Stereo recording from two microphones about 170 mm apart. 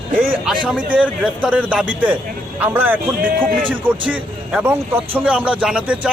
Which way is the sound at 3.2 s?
55° right (ahead or behind).